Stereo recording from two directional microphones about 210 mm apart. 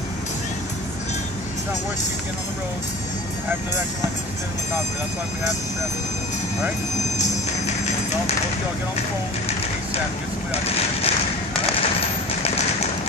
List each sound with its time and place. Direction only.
10.5 s speech: 30° left (ahead or behind)